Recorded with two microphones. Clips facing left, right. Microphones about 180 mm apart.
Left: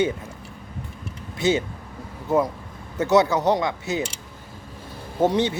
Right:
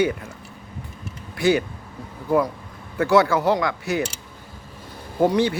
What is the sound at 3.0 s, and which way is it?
Speech, 20° left (ahead or behind).